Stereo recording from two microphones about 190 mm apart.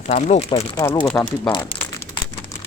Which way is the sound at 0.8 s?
15° left (ahead or behind).